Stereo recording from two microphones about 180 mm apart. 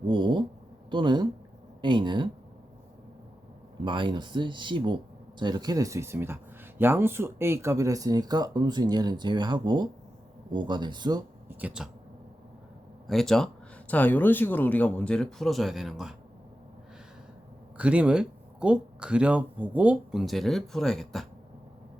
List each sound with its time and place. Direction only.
0.1 s a sound: 25° right (ahead or behind)
0.9 s speech: 25° right (ahead or behind)
3.8 s speech: 25° right (ahead or behind)
11.4 s speech: 5° right (ahead or behind)
13.1 s speech: centre (ahead or behind)
17.7 s speech: 5° right (ahead or behind)